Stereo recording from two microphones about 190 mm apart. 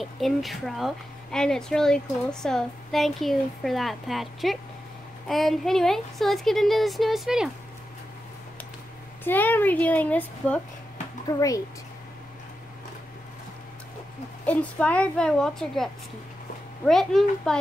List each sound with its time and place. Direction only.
0.0 s speech: centre (ahead or behind)
9.2 s a woman's voice: 10° left (ahead or behind)
11.3 s a woman's voice: 15° left (ahead or behind)
14.4 s speech: 10° left (ahead or behind)